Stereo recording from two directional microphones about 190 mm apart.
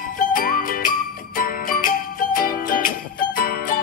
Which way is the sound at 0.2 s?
45° left (ahead or behind).